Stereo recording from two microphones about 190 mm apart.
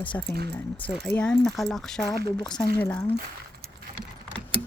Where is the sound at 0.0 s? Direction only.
10° left (ahead or behind).